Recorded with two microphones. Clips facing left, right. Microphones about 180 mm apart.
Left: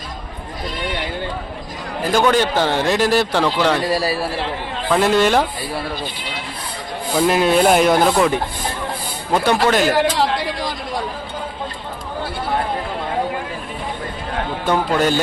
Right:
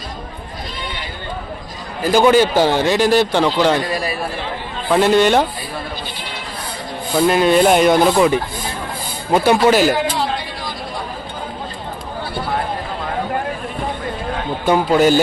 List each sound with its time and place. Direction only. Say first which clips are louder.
2.1 s a man's voice: right 4 dB; 5° right (ahead or behind)
3.9 s a man's voice: left 3 dB; 35° left (ahead or behind)
4.9 s a man's voice: right 2 dB; centre (ahead or behind)
7.2 s a man's voice: right 2 dB; centre (ahead or behind)
10.2 s chatter: left 3 dB; 85° left
14.7 s a man's voice: right 5 dB; 5° right (ahead or behind)